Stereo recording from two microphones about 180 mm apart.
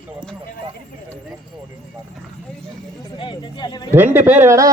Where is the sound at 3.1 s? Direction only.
30° left (ahead or behind).